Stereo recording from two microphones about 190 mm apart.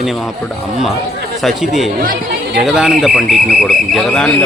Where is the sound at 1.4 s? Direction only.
Centre (ahead or behind).